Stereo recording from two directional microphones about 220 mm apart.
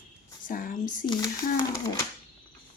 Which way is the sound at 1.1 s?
15° left (ahead or behind).